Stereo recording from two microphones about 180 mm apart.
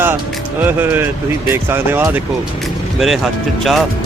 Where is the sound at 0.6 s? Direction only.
10° right (ahead or behind).